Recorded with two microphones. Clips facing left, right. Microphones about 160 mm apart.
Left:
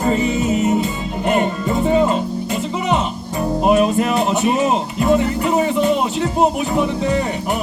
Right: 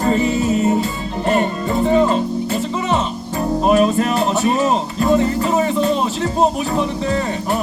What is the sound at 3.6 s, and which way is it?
Music, 15° left (ahead or behind).